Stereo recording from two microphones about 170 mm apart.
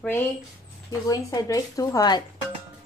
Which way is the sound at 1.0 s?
20° left (ahead or behind).